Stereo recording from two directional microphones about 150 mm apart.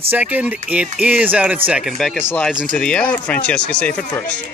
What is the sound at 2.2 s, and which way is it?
Speech, 10° left (ahead or behind).